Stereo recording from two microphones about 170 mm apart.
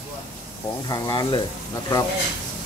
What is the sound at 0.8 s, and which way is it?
Speech, 20° left (ahead or behind).